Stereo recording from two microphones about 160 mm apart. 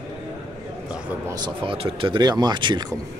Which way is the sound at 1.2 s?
25° right (ahead or behind).